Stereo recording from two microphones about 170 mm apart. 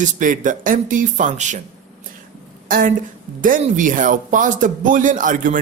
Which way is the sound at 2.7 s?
55° right (ahead or behind).